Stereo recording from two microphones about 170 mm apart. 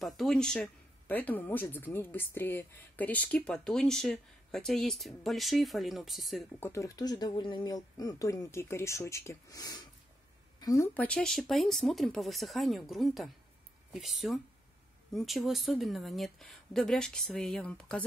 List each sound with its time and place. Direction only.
0.0 s speech: centre (ahead or behind)
6.6 s speech: 15° left (ahead or behind)
11.0 s speech: 5° left (ahead or behind)